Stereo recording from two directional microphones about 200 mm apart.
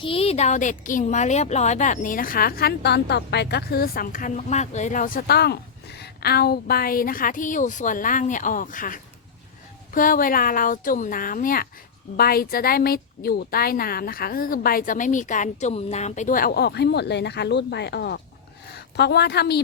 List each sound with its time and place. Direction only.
0.0 s a woman's voice: 30° left (ahead or behind); by 19.6 s 55° left (ahead or behind)